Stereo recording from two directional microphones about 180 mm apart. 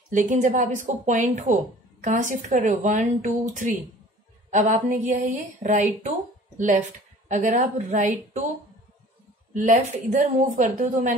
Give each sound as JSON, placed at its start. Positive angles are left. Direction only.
{"t": 0.1, "sound": "a woman's voice", "side_deg": -45}
{"t": 9.5, "sound": "a woman's voice", "side_deg": -45}